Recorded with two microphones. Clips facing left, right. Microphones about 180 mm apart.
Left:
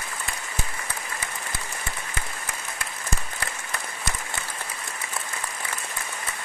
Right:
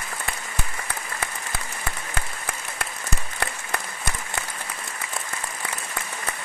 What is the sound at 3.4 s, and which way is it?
Applause, 60° right (ahead or behind).